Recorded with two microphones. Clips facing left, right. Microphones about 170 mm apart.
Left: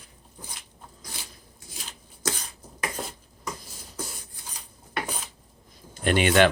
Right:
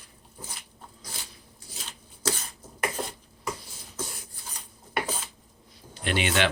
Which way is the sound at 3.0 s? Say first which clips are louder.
Right 1 dB; 5° right (ahead or behind).